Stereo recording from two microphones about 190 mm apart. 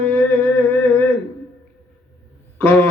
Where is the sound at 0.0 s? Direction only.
10° left (ahead or behind).